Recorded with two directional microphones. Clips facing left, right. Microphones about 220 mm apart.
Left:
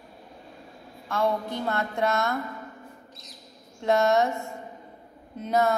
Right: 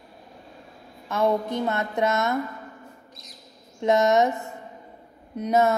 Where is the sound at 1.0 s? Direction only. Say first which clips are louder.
Right 3 dB; 20° right (ahead or behind).